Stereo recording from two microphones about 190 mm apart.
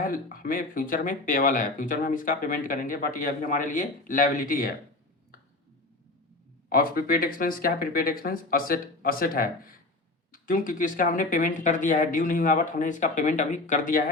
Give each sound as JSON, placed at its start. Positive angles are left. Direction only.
{"t": 0.0, "sound": "speech", "side_deg": 45}
{"t": 6.7, "sound": "speech", "side_deg": 50}